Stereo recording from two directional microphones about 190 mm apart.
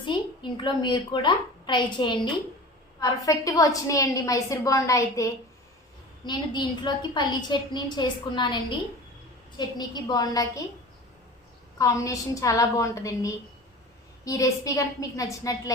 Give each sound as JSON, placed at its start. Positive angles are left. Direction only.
{"t": 0.0, "sound": "a woman's voice", "side_deg": 25}
{"t": 9.6, "sound": "a woman's voice", "side_deg": 20}
{"t": 11.8, "sound": "a woman's voice", "side_deg": 15}